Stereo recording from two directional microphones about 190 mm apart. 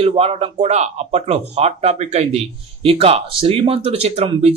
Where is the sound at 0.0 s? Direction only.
30° right (ahead or behind).